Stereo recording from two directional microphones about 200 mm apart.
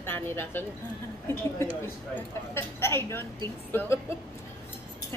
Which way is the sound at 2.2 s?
10° left (ahead or behind).